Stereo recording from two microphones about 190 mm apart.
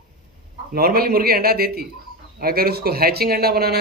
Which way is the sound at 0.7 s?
50° right (ahead or behind).